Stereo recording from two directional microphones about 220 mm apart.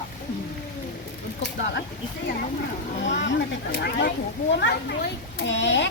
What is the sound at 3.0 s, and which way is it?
Speech, 55° left (ahead or behind).